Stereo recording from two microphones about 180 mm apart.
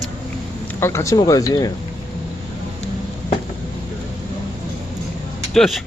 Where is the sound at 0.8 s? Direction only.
15° left (ahead or behind).